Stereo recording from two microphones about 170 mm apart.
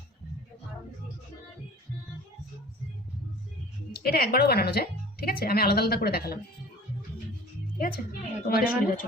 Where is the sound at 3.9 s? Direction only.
65° left (ahead or behind).